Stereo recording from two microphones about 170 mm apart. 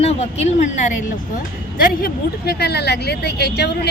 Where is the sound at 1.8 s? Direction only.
60° left (ahead or behind).